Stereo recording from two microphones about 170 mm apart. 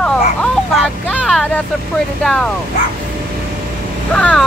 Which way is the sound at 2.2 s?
5° left (ahead or behind).